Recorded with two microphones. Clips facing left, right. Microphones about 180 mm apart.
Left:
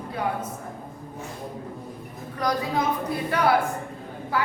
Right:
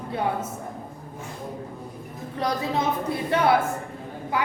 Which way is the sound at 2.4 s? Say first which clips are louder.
Even; 25° right (ahead or behind).